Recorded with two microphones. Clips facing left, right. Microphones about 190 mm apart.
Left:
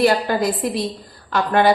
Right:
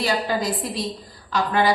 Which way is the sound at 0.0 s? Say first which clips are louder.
Left 6 dB; 55° left (ahead or behind).